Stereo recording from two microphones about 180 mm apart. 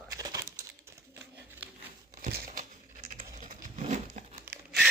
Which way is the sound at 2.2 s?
50° right (ahead or behind).